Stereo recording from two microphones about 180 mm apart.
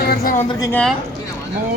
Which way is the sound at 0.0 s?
60° left (ahead or behind).